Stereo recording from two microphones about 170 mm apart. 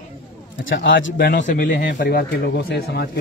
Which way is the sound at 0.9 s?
90° left.